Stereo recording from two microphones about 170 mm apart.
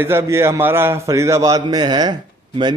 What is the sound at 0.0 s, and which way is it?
A man's voice, 15° right (ahead or behind).